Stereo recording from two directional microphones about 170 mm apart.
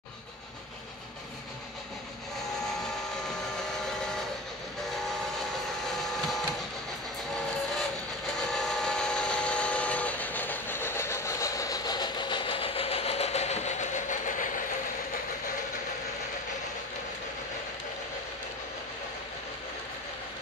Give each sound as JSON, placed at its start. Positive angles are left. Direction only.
{"t": 7.3, "sound": "vehicle", "side_deg": 5}